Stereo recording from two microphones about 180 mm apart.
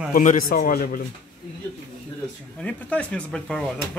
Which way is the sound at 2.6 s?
5° left (ahead or behind).